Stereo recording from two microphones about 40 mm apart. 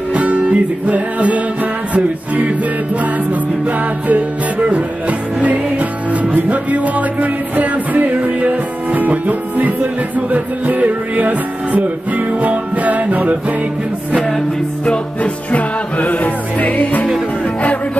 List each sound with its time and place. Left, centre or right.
0.1 s music: right
4.1 s music: right
14.9 s music: left